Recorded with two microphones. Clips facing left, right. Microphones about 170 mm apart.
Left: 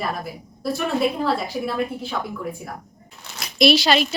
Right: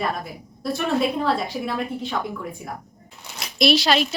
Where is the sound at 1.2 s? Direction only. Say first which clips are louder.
Even; 5° left (ahead or behind).